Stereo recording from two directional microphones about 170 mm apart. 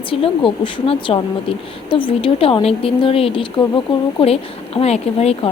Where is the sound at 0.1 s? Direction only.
30° left (ahead or behind).